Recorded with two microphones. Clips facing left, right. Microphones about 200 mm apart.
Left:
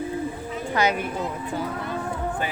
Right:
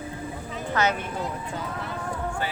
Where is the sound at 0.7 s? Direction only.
15° left (ahead or behind).